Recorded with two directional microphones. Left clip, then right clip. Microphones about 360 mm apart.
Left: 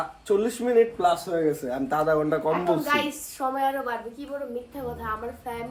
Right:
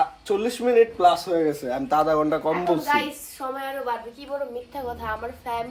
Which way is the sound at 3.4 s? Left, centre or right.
Centre.